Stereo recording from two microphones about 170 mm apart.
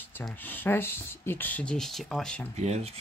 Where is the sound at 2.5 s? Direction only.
40° right (ahead or behind).